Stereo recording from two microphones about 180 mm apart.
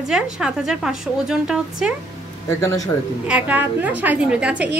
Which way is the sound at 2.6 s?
20° left (ahead or behind).